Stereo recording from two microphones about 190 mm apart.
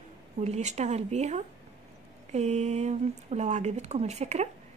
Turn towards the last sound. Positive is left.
turn(degrees=-35)  # may be behind; listen again after turning